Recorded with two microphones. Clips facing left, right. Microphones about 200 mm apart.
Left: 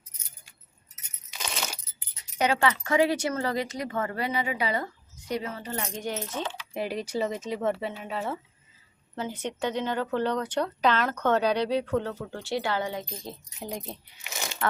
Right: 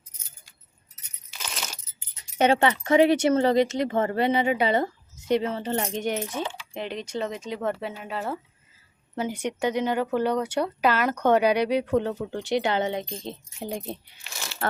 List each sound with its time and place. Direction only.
2.0 s speech: 25° right (ahead or behind)
6.7 s speech: 5° left (ahead or behind)
9.1 s speech: 15° right (ahead or behind)
14.3 s a sound: 15° left (ahead or behind)